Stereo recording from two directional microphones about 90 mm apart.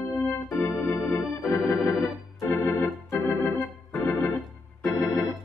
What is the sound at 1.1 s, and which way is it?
Organ, 30° left (ahead or behind).